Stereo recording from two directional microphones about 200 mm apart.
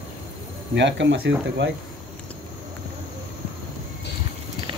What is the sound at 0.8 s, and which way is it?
Speech, 65° right (ahead or behind).